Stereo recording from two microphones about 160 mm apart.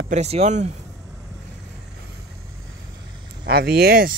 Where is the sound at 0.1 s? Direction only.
40° right (ahead or behind).